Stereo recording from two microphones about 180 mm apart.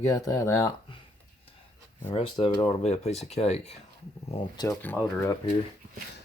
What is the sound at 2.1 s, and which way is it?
Speech, 30° left (ahead or behind).